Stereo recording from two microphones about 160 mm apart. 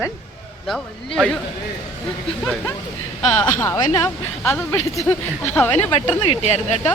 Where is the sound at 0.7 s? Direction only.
5° left (ahead or behind).